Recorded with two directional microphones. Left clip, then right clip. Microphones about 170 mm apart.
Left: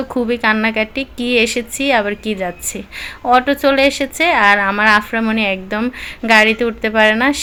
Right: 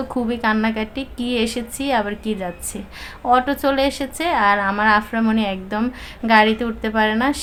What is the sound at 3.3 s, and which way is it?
A woman's voice, 15° left (ahead or behind).